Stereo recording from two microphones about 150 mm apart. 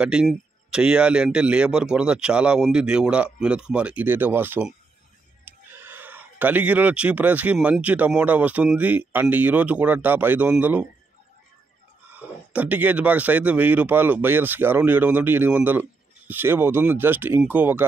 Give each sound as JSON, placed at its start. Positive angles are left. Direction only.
{"t": 0.0, "sound": "speech", "side_deg": -5}
{"t": 5.4, "sound": "a sound", "side_deg": -15}
{"t": 7.5, "sound": "speech", "side_deg": -5}
{"t": 12.1, "sound": "speech", "side_deg": -10}